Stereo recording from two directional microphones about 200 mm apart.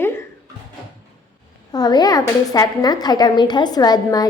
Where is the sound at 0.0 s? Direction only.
10° left (ahead or behind).